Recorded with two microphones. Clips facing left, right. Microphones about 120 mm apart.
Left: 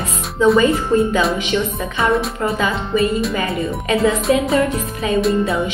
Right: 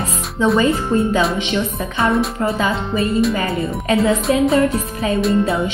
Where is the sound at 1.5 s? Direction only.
35° right (ahead or behind).